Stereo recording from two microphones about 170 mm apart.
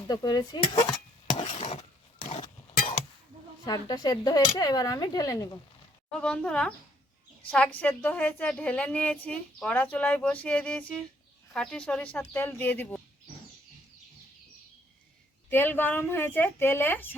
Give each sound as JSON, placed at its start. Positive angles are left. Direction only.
{"t": 0.1, "sound": "speech", "side_deg": 25}
{"t": 1.5, "sound": "a sound", "side_deg": 40}
{"t": 3.7, "sound": "speech", "side_deg": 20}
{"t": 6.1, "sound": "a woman's voice", "side_deg": 5}
{"t": 15.4, "sound": "a woman's voice", "side_deg": 10}